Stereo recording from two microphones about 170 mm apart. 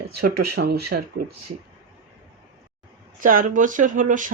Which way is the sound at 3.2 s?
50° right (ahead or behind).